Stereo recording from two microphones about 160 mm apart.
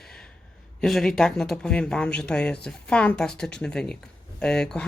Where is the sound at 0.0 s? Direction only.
5° left (ahead or behind).